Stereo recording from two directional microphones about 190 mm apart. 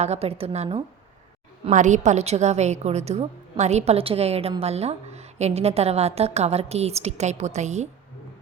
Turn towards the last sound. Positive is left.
turn(degrees=-35)  # may be behind; listen again after turning